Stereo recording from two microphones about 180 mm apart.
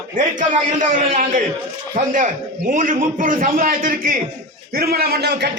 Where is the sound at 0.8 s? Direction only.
45° right (ahead or behind).